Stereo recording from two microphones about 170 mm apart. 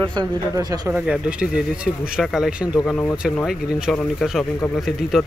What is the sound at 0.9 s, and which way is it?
Speech, 10° right (ahead or behind).